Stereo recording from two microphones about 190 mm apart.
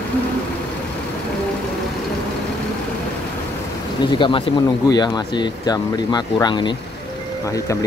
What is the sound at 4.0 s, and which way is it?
Speech, 25° left (ahead or behind).